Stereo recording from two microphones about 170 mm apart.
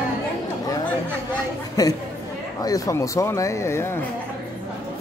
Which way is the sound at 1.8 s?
20° left (ahead or behind).